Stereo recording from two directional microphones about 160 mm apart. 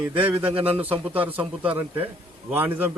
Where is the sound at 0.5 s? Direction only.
35° right (ahead or behind).